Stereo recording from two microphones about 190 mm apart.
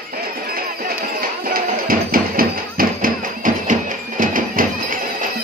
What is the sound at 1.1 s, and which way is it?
Music, 50° right (ahead or behind).